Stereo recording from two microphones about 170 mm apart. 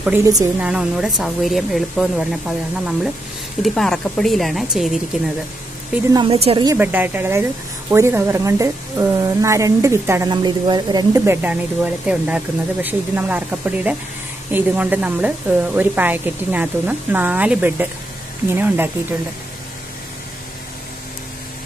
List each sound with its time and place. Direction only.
0.0 s a woman's voice: 10° right (ahead or behind)
3.6 s speech: centre (ahead or behind)
6.1 s a woman's voice: 35° right (ahead or behind)
6.8 s a woman's voice: 10° right (ahead or behind)
11.4 s a woman's voice: 10° right (ahead or behind)